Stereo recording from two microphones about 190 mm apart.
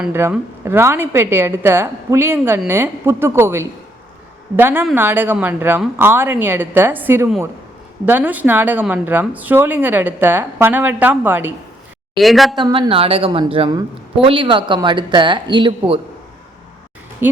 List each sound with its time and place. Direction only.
0.0 s a woman's voice: 10° right (ahead or behind)
12.1 s a woman's voice: centre (ahead or behind)
12.5 s a woman's voice: 20° right (ahead or behind)
17.2 s a woman's voice: 10° right (ahead or behind)